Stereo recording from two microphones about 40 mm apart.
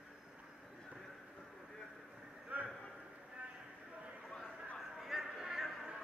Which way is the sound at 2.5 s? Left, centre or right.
Right.